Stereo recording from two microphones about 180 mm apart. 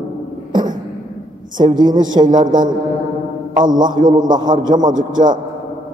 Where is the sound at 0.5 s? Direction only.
25° right (ahead or behind).